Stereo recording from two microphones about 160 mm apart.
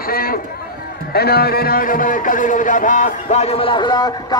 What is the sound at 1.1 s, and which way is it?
A man's voice, 80° left.